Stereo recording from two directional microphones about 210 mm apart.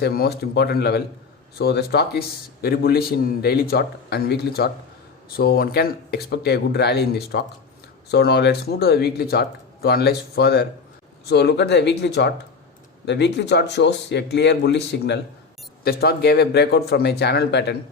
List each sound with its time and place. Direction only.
0.0 s speech: 50° left (ahead or behind)